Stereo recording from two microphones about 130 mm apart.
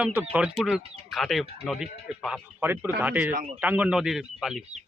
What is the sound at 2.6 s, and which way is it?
Speech, 15° right (ahead or behind).